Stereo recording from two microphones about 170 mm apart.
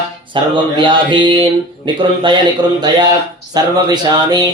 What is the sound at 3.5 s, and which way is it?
Speech, 25° right (ahead or behind).